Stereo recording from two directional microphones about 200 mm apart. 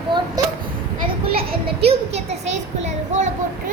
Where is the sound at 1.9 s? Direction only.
30° right (ahead or behind).